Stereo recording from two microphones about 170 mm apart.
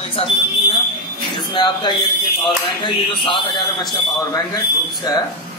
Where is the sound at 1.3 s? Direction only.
25° left (ahead or behind).